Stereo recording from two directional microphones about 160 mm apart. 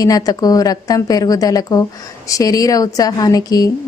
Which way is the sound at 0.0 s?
25° left (ahead or behind).